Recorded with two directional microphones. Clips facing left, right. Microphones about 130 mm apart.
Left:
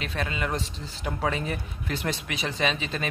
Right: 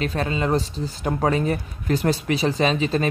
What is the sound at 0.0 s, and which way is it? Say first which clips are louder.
Speech: right 7 dB; 35° right (ahead or behind).